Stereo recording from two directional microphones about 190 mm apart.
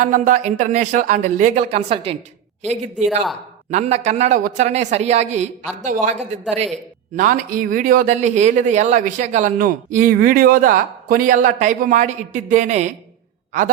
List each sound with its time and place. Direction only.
0.0 s speech: 45° right (ahead or behind)